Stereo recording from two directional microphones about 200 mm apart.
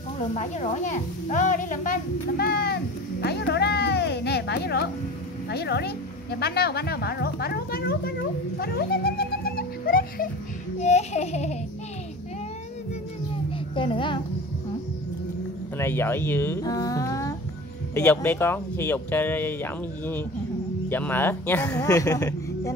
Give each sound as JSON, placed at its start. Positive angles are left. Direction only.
{"t": 0.3, "sound": "a woman's voice", "side_deg": 35}
{"t": 10.8, "sound": "a sound", "side_deg": 35}
{"t": 13.7, "sound": "a child's voice", "side_deg": 25}
{"t": 15.8, "sound": "speech", "side_deg": 10}